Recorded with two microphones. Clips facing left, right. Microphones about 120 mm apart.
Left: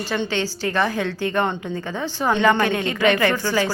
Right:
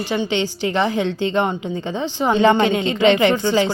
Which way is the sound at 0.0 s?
20° right (ahead or behind).